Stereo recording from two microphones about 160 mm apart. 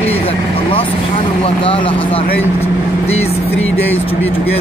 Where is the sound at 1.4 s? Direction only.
35° left (ahead or behind).